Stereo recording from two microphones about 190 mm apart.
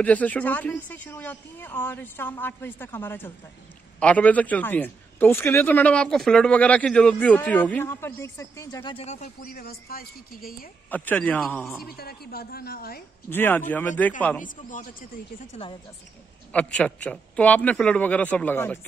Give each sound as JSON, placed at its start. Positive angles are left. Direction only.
{"t": 0.0, "sound": "a man's voice", "side_deg": 10}
{"t": 8.9, "sound": "speech", "side_deg": 35}
{"t": 9.4, "sound": "a woman's voice", "side_deg": 50}
{"t": 10.9, "sound": "a man's voice", "side_deg": 10}
{"t": 11.8, "sound": "a woman's voice", "side_deg": 55}
{"t": 13.3, "sound": "a man's voice", "side_deg": 10}
{"t": 14.4, "sound": "a woman's voice", "side_deg": 45}
{"t": 16.5, "sound": "a man's voice", "side_deg": 5}